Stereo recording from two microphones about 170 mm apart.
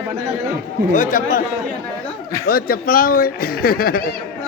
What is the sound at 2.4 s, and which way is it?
Speech, 60° left (ahead or behind).